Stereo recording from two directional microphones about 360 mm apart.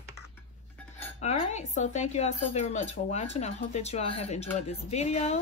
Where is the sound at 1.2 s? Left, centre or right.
Centre.